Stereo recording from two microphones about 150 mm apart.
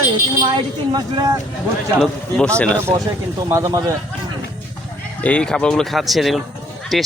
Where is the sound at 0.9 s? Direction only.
25° right (ahead or behind).